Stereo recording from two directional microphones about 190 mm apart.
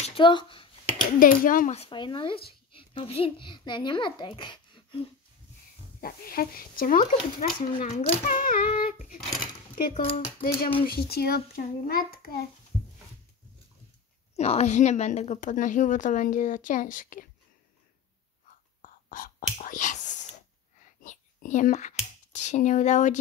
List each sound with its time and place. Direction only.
0.0 s a sound: 25° left (ahead or behind)
1.2 s a woman's voice: 45° left (ahead or behind); by 5.0 s 25° left (ahead or behind)
5.9 s a woman's voice: 50° left (ahead or behind)
14.3 s a woman's voice: 35° left (ahead or behind)
18.8 s whispering: 45° left (ahead or behind)
22.3 s speech: 40° left (ahead or behind)